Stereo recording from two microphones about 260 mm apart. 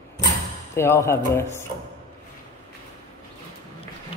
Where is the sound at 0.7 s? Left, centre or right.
Centre.